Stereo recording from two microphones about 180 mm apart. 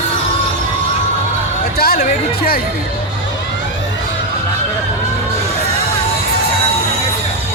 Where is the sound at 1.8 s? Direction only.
55° left (ahead or behind).